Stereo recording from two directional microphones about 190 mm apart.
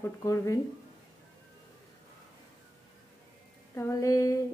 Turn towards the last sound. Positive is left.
turn(degrees=15)  # may be behind; listen again after turning